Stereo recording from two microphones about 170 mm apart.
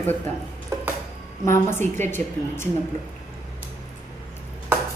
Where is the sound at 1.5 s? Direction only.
15° left (ahead or behind).